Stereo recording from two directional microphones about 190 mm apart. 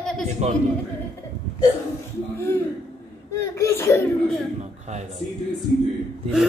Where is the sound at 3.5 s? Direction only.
15° left (ahead or behind).